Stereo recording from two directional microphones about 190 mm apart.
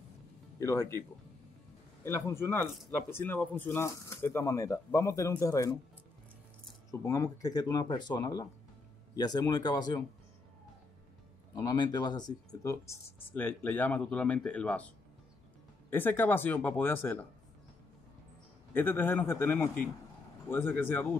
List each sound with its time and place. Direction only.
0.6 s speech: 15° left (ahead or behind)
2.0 s speech: 15° left (ahead or behind)
6.9 s speech: 15° left (ahead or behind)
11.5 s speech: 20° left (ahead or behind); by 14.9 s 5° left (ahead or behind)
15.9 s speech: 10° left (ahead or behind)
18.7 s speech: 10° left (ahead or behind)